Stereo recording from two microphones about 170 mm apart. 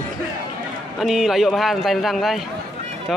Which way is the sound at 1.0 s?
Centre (ahead or behind).